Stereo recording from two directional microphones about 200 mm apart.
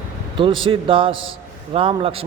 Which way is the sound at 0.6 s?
25° right (ahead or behind).